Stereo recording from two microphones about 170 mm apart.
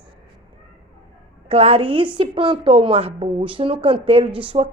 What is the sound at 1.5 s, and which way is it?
A woman's voice, 35° right (ahead or behind).